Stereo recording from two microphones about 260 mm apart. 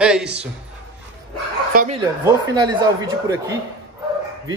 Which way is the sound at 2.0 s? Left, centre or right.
Centre.